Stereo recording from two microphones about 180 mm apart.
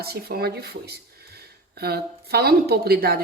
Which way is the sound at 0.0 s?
60° right (ahead or behind).